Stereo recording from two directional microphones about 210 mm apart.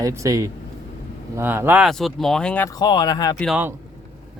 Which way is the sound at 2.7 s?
20° left (ahead or behind).